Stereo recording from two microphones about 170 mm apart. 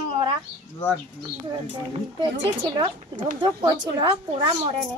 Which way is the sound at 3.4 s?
25° right (ahead or behind).